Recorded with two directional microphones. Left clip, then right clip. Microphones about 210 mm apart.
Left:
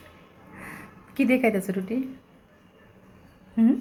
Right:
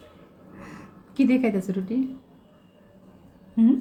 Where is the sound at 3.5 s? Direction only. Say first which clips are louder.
Right 2 dB; centre (ahead or behind).